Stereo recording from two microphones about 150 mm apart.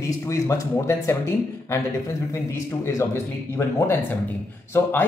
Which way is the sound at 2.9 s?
20° left (ahead or behind).